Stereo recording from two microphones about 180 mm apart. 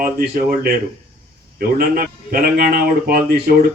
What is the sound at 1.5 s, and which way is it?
A man's voice, 55° right (ahead or behind).